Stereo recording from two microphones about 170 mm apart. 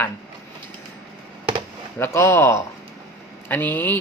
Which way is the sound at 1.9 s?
15° left (ahead or behind).